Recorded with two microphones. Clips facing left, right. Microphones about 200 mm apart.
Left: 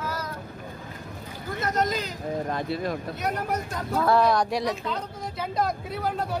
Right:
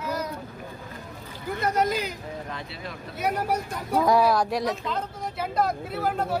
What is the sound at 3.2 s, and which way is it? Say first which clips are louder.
Speech: right 4 dB; 10° right (ahead or behind).